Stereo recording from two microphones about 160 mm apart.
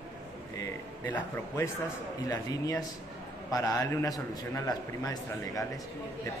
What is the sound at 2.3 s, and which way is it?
A man's voice, 20° left (ahead or behind).